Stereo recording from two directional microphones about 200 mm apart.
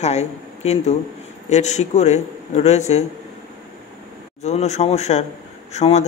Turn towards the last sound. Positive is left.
turn(degrees=35)  # may be behind; listen again after turning